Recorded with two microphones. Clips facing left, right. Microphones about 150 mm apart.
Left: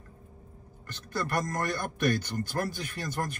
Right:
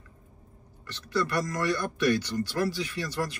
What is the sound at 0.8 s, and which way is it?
A man's voice, 50° left (ahead or behind).